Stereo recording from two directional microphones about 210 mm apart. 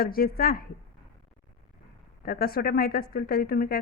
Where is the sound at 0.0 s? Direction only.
45° left (ahead or behind).